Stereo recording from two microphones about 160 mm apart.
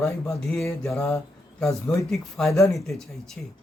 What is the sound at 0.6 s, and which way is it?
Mantra, centre (ahead or behind).